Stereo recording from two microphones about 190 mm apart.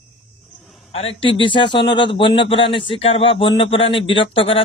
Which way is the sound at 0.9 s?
30° left (ahead or behind).